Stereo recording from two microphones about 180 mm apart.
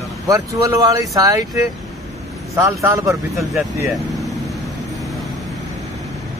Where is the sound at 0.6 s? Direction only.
20° right (ahead or behind).